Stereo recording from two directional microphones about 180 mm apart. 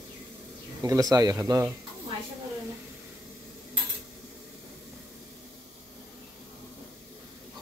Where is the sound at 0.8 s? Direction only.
20° right (ahead or behind).